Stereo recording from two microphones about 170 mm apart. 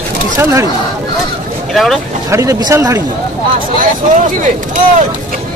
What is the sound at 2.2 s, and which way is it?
Speech, 20° right (ahead or behind).